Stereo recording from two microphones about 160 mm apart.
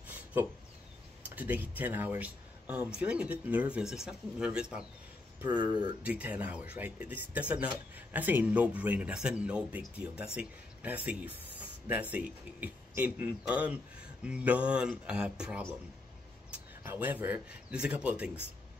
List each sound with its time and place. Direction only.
1.3 s speech: 10° right (ahead or behind)
5.5 s speech: 25° right (ahead or behind)
6.0 s speech: 10° right (ahead or behind)
16.8 s speech: 15° right (ahead or behind)